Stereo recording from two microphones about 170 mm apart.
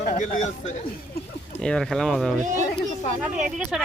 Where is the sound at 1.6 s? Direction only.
5° left (ahead or behind).